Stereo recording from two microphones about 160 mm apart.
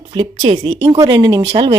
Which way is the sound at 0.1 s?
35° right (ahead or behind).